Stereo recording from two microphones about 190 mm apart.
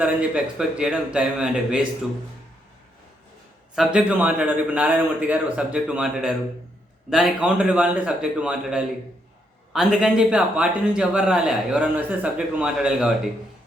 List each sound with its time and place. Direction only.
0.0 s a man's voice: 5° right (ahead or behind)
3.8 s a man's voice: 5° right (ahead or behind)